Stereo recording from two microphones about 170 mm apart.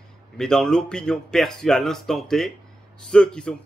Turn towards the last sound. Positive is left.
turn(degrees=5)  # may be behind; listen again after turning